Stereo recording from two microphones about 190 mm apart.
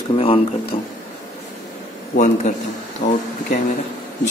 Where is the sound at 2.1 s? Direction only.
40° left (ahead or behind).